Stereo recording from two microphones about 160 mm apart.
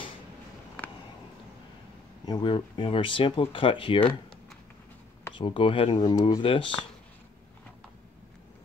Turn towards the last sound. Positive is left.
turn(degrees=30)  # may be behind; listen again after turning